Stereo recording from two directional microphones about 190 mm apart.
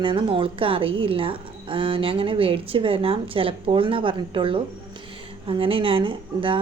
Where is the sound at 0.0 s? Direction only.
25° right (ahead or behind).